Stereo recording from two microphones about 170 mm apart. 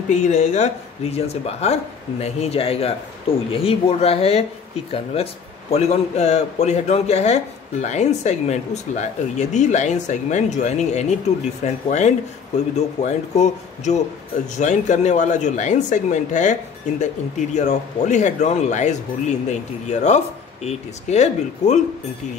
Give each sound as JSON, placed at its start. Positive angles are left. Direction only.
{"t": 0.1, "sound": "a man's voice", "side_deg": 45}
{"t": 17.6, "sound": "a man's voice", "side_deg": 45}